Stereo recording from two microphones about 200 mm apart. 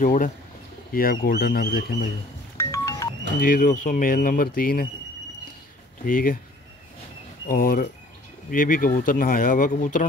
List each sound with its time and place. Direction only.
0.0 s speech: 40° left (ahead or behind)
2.5 s wind chime: 15° left (ahead or behind)
3.3 s speech: 45° left (ahead or behind)
6.0 s speech: 45° left (ahead or behind)
7.4 s speech: 45° left (ahead or behind)